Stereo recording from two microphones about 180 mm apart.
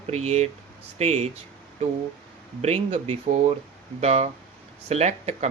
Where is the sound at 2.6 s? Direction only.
40° right (ahead or behind).